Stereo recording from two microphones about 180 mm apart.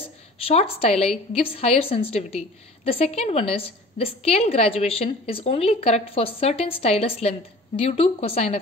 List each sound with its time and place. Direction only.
0.4 s a woman's voice: 30° left (ahead or behind)